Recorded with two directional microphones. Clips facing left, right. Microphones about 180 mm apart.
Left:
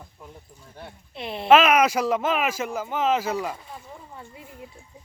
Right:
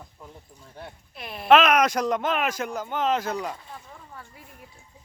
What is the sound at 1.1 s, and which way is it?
Speech, 25° left (ahead or behind).